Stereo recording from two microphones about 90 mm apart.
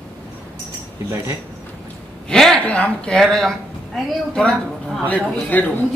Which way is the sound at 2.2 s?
5° left (ahead or behind).